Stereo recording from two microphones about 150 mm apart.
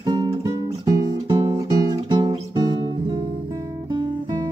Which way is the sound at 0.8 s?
25° right (ahead or behind).